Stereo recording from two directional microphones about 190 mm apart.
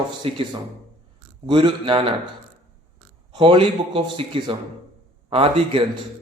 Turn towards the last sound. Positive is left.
turn(degrees=-30)  # may be behind; listen again after turning